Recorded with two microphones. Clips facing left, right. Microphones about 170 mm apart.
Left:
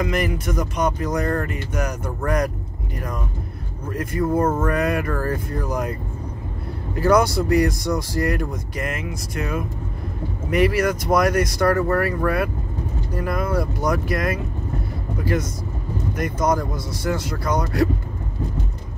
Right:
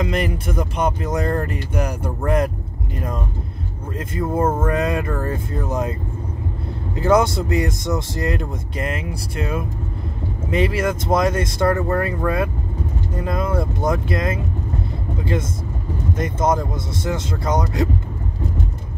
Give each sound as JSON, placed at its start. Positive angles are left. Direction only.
{"t": 0.0, "sound": "speech", "side_deg": -25}
{"t": 3.9, "sound": "speech", "side_deg": -25}
{"t": 7.0, "sound": "speech", "side_deg": -20}